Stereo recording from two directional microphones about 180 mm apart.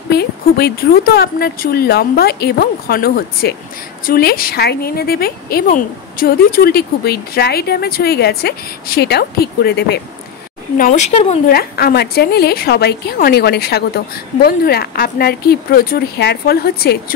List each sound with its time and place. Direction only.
0.1 s a woman's voice: 60° left (ahead or behind)
10.8 s speech: 40° left (ahead or behind)
11.4 s a woman's voice: 55° left (ahead or behind)